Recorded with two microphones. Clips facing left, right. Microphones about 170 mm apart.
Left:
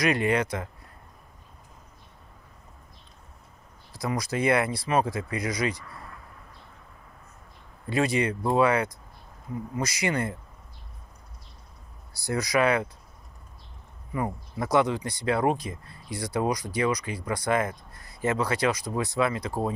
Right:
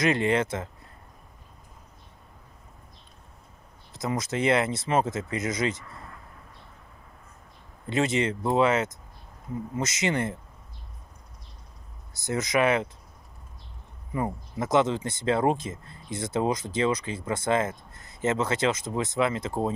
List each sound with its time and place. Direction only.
0.0 s speech: 25° right (ahead or behind)
3.9 s speech: 25° right (ahead or behind)
7.8 s speech: 25° right (ahead or behind)
12.1 s speech: 20° right (ahead or behind)
14.1 s speech: 25° right (ahead or behind)